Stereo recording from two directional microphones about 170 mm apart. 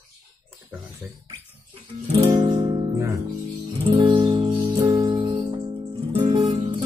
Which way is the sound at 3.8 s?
25° right (ahead or behind).